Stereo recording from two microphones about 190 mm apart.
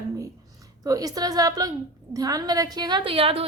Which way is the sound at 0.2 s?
20° right (ahead or behind).